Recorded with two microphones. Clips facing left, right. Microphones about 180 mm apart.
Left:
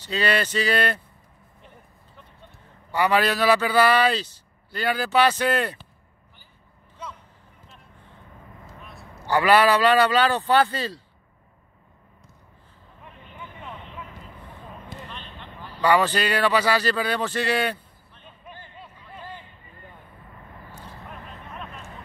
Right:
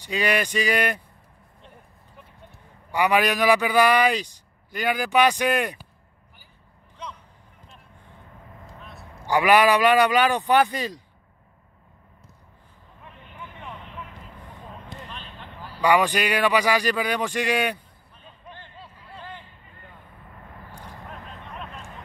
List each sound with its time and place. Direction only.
0.0 s a man's voice: 15° right (ahead or behind)
2.9 s a man's voice: 15° right (ahead or behind)
8.6 s vehicle: centre (ahead or behind)
9.2 s a man's voice: 15° right (ahead or behind)
14.9 s a sound: centre (ahead or behind)
15.8 s a man's voice: 15° right (ahead or behind)
18.5 s a sound: 10° left (ahead or behind)
20.7 s vehicle: 15° right (ahead or behind)